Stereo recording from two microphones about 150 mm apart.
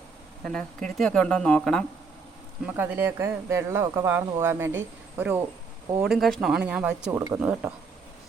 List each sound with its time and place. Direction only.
0.4 s speech: 5° left (ahead or behind)
2.7 s speech: 15° right (ahead or behind)
6.0 s speech: centre (ahead or behind)
7.1 s speech: 20° right (ahead or behind)